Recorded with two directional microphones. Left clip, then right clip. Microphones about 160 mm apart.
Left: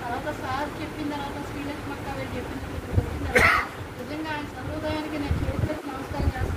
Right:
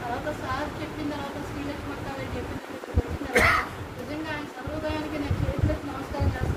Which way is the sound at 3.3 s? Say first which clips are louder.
Left 2 dB; 90° right.